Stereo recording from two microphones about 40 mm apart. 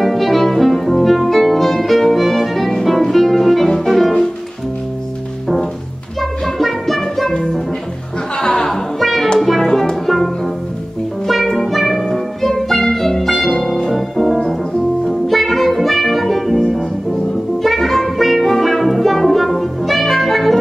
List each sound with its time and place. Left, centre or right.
0.0 s music: centre
6.4 s music: centre
8.4 s music: left
8.6 s music: centre
11.2 s music: centre